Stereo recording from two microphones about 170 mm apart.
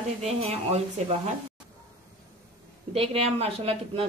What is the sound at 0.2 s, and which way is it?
A woman's voice, 35° right (ahead or behind).